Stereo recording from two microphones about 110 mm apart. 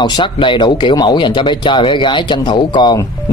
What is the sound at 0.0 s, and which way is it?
Speech, 45° left (ahead or behind).